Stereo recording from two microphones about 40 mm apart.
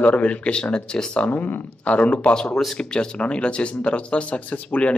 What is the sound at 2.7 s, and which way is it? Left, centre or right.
Speech, left.